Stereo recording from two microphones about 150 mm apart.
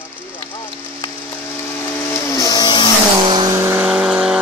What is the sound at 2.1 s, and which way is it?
Vehicle, 20° left (ahead or behind).